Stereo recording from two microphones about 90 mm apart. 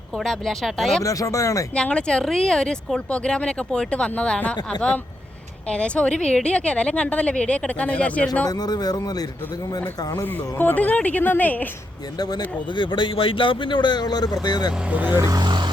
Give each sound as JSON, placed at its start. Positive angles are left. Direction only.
{"t": 0.2, "sound": "speech", "side_deg": 5}
{"t": 1.0, "sound": "speech", "side_deg": 40}
{"t": 1.7, "sound": "speech", "side_deg": 10}
{"t": 8.4, "sound": "speech", "side_deg": 50}
{"t": 10.2, "sound": "speech", "side_deg": 20}
{"t": 12.4, "sound": "a man's voice", "side_deg": 60}
{"t": 14.8, "sound": "speech", "side_deg": -20}
{"t": 15.2, "sound": "a sound", "side_deg": -40}
{"t": 15.4, "sound": "vehicle", "side_deg": -55}